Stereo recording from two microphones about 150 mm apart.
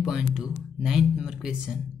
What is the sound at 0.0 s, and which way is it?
Speech, 5° right (ahead or behind).